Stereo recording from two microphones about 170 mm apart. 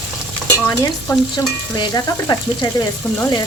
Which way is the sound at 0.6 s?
20° left (ahead or behind).